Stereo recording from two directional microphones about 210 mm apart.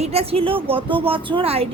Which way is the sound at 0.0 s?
30° right (ahead or behind).